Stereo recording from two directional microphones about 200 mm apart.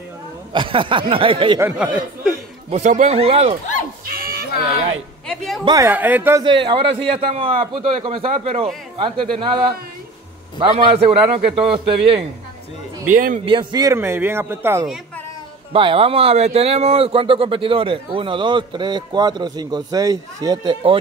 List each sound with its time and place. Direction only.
0.5 s speech: 25° right (ahead or behind)
2.7 s speech: 35° right (ahead or behind)
4.2 s a sound: 50° right (ahead or behind)
5.3 s speech: centre (ahead or behind)
5.7 s speech: 10° right (ahead or behind)
6.4 s speech: 25° right (ahead or behind)
13.1 s speech: 40° right (ahead or behind)
13.5 s speech: 25° right (ahead or behind)
15.7 s speech: 30° right (ahead or behind)